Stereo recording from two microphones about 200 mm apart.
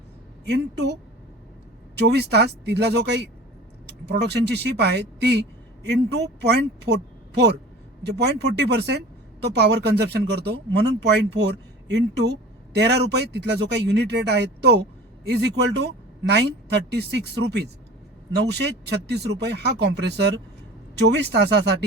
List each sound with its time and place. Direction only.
0.4 s speech: 55° right (ahead or behind)
2.0 s speech: 55° right (ahead or behind)